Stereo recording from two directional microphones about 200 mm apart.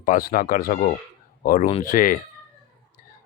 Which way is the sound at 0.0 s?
45° left (ahead or behind).